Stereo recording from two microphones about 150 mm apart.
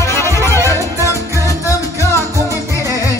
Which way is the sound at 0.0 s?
20° left (ahead or behind).